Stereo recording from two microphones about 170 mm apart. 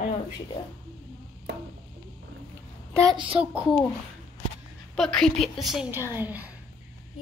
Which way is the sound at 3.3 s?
5° right (ahead or behind).